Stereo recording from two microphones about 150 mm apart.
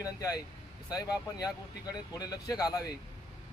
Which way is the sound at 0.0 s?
25° left (ahead or behind).